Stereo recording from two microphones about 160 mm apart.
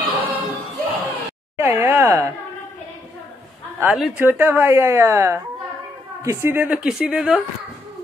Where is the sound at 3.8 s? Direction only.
5° right (ahead or behind).